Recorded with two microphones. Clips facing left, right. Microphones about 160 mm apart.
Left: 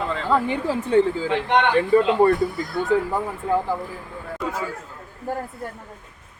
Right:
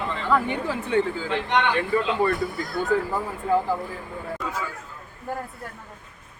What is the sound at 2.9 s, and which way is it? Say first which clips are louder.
Speech: left 3 dB; 20° left (ahead or behind).